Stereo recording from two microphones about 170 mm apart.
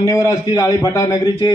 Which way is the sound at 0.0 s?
15° left (ahead or behind).